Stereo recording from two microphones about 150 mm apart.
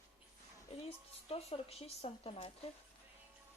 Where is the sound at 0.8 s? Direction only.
45° left (ahead or behind).